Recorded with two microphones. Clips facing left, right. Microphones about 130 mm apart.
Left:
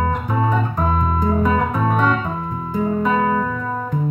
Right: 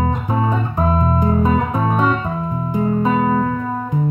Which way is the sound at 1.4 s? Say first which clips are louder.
Right 1 dB; 25° right (ahead or behind).